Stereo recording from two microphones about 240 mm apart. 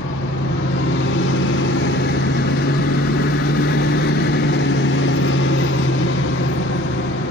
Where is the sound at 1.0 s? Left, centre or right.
Left.